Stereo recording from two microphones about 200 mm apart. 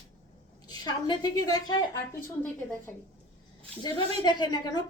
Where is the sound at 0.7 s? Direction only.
25° left (ahead or behind).